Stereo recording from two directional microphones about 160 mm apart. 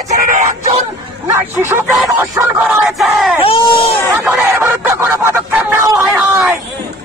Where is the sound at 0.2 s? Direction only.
55° right (ahead or behind).